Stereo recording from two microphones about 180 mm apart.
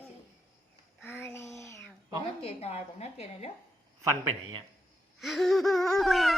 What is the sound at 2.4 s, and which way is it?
A woman's voice, 35° left (ahead or behind).